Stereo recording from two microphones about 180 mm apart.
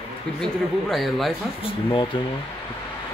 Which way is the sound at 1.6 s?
25° left (ahead or behind).